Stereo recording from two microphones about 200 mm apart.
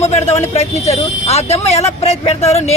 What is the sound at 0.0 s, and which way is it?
Speech, 35° left (ahead or behind).